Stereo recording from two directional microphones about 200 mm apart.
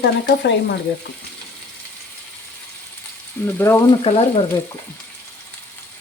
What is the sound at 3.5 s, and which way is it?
Frying, 10° left (ahead or behind).